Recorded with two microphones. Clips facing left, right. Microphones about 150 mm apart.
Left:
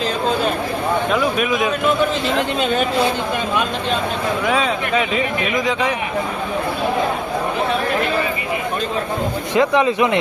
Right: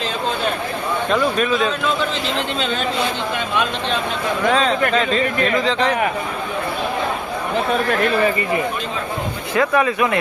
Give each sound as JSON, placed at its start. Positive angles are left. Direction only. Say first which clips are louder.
{"t": 1.1, "sound": "speech", "louder": "even", "side_deg": 10}
{"t": 4.4, "sound": "speech", "louder": "right 5 dB", "side_deg": 10}
{"t": 9.6, "sound": "speech", "louder": "left 2 dB", "side_deg": 20}